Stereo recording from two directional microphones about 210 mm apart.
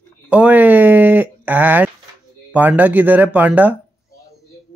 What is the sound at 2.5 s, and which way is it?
Speech, 10° right (ahead or behind).